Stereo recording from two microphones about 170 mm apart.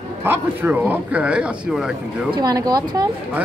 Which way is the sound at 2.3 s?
20° right (ahead or behind).